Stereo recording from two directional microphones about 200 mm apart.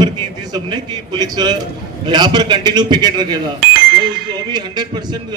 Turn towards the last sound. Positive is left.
turn(degrees=-20)  # may be behind; listen again after turning